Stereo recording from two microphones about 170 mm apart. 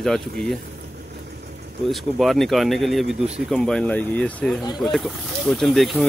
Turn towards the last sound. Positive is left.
turn(degrees=0)  # may be behind; listen again after turning